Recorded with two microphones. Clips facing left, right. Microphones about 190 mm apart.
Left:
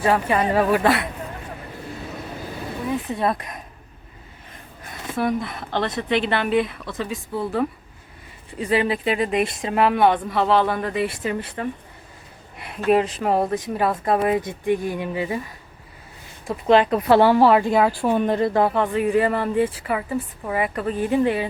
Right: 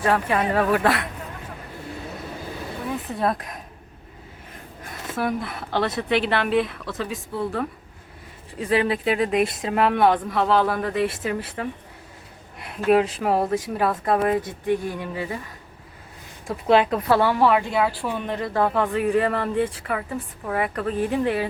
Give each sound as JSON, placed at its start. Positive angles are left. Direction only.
{"t": 0.0, "sound": "speech", "side_deg": 0}
{"t": 3.1, "sound": "speech", "side_deg": 0}
{"t": 4.9, "sound": "speech", "side_deg": 0}
{"t": 16.5, "sound": "speech", "side_deg": -5}
{"t": 17.1, "sound": "a woman's voice", "side_deg": 30}
{"t": 18.7, "sound": "speech", "side_deg": 0}